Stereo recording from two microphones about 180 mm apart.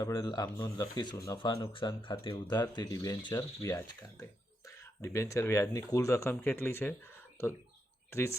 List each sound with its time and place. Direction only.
0.0 s speech: 20° left (ahead or behind)
8.1 s speech: 15° left (ahead or behind)